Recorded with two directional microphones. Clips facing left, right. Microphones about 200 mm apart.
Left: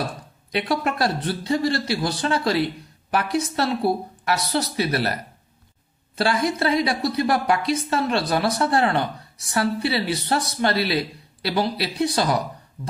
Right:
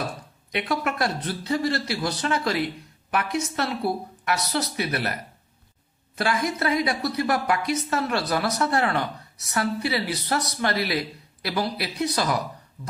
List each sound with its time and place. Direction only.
0.5 s a woman's voice: 30° left (ahead or behind)